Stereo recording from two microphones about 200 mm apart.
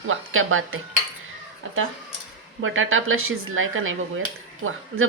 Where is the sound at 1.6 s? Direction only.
90° right.